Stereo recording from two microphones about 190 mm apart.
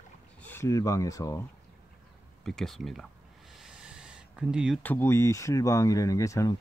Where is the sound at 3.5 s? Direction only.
Centre (ahead or behind).